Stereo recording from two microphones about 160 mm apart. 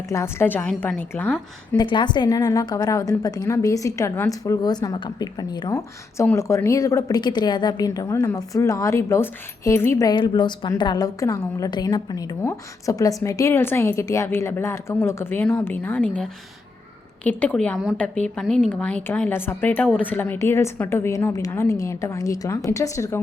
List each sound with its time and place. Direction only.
0.1 s a woman's voice: 15° left (ahead or behind)
1.7 s a woman's voice: 30° left (ahead or behind)